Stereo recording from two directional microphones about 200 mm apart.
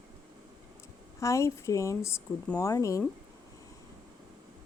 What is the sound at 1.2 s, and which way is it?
Speech, 15° left (ahead or behind).